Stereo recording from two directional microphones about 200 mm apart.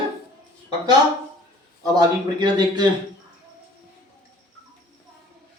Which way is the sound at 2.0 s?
20° right (ahead or behind).